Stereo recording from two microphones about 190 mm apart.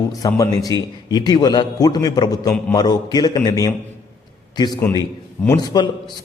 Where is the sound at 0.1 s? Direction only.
15° left (ahead or behind).